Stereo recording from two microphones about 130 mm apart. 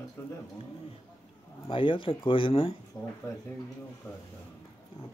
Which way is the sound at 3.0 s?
5° left (ahead or behind).